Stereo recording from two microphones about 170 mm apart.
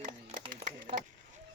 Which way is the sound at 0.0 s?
35° right (ahead or behind).